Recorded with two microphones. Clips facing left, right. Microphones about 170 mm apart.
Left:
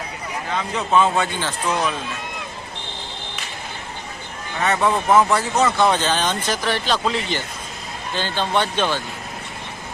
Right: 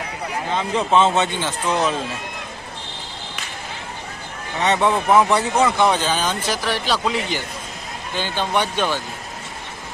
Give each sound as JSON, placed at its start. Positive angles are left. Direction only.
{"t": 0.5, "sound": "speech", "side_deg": -30}
{"t": 4.6, "sound": "speech", "side_deg": -20}